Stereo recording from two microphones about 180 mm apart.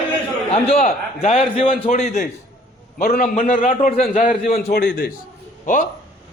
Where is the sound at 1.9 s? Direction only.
50° left (ahead or behind).